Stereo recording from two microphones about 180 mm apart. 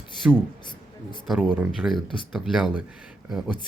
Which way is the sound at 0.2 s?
10° right (ahead or behind).